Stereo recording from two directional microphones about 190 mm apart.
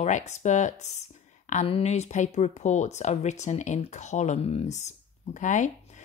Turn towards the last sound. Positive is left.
turn(degrees=40)  # may be behind; listen again after turning